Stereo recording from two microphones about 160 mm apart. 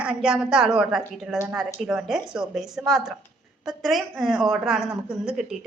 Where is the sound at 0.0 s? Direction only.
5° right (ahead or behind).